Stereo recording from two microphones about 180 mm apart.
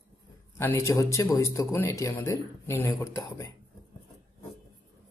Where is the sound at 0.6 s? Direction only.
15° left (ahead or behind).